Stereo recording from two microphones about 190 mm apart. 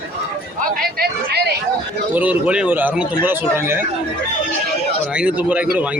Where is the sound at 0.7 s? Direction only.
50° right (ahead or behind).